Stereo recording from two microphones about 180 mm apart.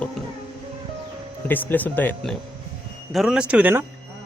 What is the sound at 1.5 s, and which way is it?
Speech, 10° left (ahead or behind).